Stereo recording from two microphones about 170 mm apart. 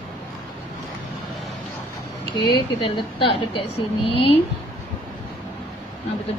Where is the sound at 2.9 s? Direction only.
30° left (ahead or behind).